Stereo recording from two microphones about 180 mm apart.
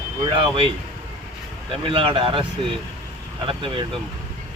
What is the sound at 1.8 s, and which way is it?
Speech, 30° right (ahead or behind).